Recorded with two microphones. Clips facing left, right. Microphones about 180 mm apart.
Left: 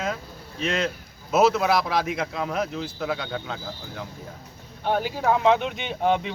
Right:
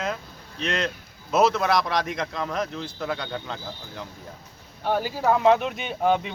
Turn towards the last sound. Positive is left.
turn(degrees=0)  # may be behind; listen again after turning